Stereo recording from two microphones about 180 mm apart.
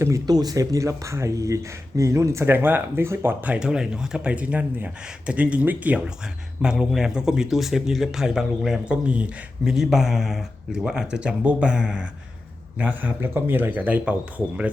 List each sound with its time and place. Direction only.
0.0 s speech: 20° right (ahead or behind)